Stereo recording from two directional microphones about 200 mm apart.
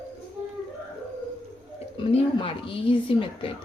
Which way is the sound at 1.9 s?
25° left (ahead or behind).